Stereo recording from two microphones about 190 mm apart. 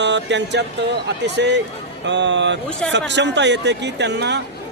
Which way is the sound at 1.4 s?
65° right (ahead or behind).